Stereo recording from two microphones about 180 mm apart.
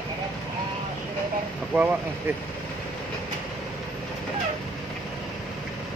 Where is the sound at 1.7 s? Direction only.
10° right (ahead or behind).